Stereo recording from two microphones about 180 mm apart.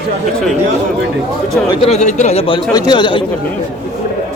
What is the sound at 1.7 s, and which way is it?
Speech, 30° left (ahead or behind).